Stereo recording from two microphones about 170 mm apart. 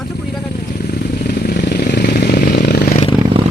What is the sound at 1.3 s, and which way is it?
Vehicle, 75° left (ahead or behind).